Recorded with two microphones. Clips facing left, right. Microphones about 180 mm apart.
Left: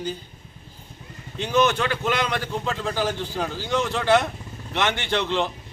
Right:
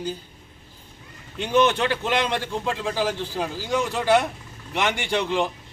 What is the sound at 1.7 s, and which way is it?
Speech, 25° right (ahead or behind).